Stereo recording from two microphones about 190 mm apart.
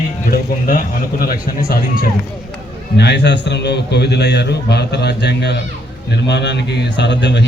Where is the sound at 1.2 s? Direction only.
50° left (ahead or behind).